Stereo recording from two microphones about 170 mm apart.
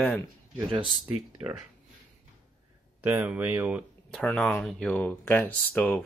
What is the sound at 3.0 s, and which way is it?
Speech, 10° right (ahead or behind).